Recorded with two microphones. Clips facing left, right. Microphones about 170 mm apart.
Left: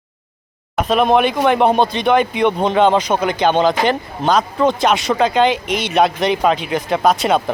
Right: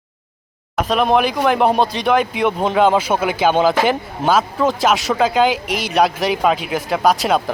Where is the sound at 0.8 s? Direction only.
Centre (ahead or behind).